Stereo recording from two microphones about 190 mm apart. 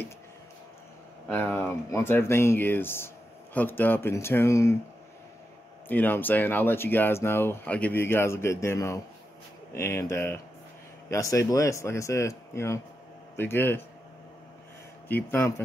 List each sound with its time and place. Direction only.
1.3 s speech: 10° left (ahead or behind)
5.9 s speech: 10° left (ahead or behind)
15.0 s speech: 10° left (ahead or behind)